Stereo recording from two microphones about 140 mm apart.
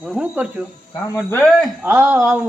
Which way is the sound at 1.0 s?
20° left (ahead or behind).